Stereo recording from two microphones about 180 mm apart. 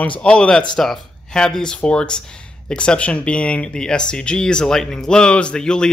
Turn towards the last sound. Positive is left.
turn(degrees=5)  # may be behind; listen again after turning